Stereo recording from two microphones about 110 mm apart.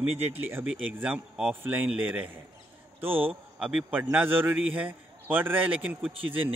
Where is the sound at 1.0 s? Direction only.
10° right (ahead or behind).